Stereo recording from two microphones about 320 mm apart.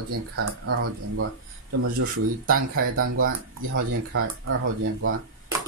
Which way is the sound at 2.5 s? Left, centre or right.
Right.